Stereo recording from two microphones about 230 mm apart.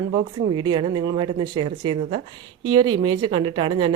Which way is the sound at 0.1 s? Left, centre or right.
Centre.